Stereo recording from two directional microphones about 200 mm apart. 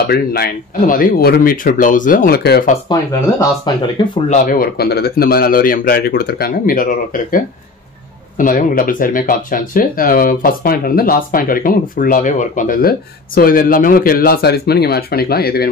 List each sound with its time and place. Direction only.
0.0 s speech: 50° left (ahead or behind)
2.9 s speech: 15° left (ahead or behind)
4.3 s speech: 45° left (ahead or behind)